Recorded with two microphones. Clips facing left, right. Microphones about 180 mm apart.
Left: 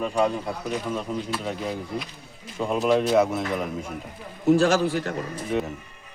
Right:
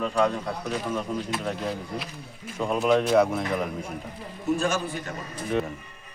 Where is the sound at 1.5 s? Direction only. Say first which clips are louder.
Left 1 dB; centre (ahead or behind).